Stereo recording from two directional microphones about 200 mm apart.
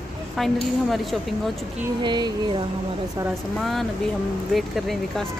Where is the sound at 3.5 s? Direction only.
Centre (ahead or behind).